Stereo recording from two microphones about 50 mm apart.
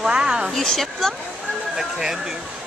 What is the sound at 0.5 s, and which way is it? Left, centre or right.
Speech, centre.